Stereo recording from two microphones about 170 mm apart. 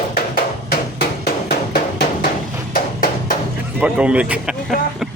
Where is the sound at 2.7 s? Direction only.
55° left (ahead or behind).